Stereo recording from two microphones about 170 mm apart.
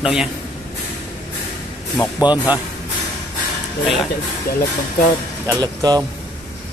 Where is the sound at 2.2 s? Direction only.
10° right (ahead or behind).